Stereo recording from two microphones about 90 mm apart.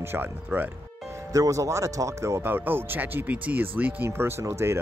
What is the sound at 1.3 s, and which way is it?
Speech, 40° right (ahead or behind).